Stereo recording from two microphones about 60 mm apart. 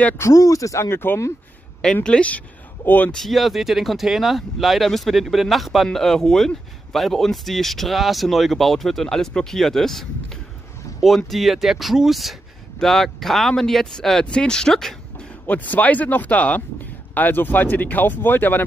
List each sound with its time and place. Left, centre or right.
0.2 s speech: left
0.8 s speech: left
2.0 s speech: left
2.8 s speech: left
3.3 s speech: centre
15.4 s speech: left